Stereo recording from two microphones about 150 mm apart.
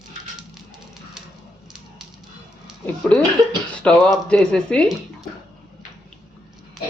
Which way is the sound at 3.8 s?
5° left (ahead or behind).